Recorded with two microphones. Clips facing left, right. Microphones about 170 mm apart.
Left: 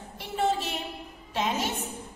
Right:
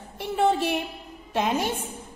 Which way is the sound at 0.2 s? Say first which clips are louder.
Right 5 dB; 60° right (ahead or behind).